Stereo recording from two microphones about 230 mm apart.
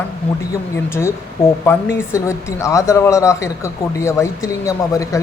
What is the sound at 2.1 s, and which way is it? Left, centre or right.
Speech, centre.